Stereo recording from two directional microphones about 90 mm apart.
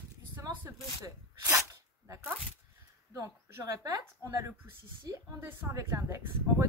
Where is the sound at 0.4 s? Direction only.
35° right (ahead or behind).